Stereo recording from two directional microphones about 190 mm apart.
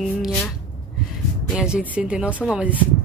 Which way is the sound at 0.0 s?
Centre (ahead or behind).